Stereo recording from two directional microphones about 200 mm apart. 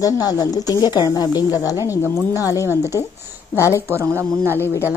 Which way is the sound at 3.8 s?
15° right (ahead or behind).